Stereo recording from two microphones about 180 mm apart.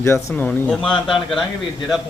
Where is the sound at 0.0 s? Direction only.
15° left (ahead or behind).